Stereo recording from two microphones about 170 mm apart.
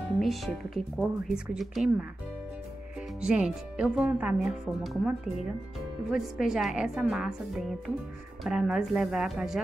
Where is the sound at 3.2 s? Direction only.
5° right (ahead or behind).